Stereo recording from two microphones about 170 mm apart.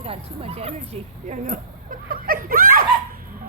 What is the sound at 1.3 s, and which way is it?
Speech, 50° right (ahead or behind).